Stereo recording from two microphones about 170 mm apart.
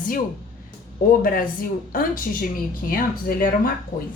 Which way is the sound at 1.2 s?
55° left (ahead or behind).